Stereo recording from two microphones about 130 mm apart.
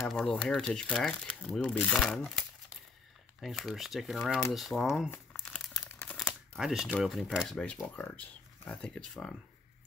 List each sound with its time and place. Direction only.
0.0 s speech: 5° left (ahead or behind)
5.4 s crumpling: 5° left (ahead or behind)
5.9 s a sound: 15° left (ahead or behind)
6.2 s camera: centre (ahead or behind)
7.0 s speech: centre (ahead or behind)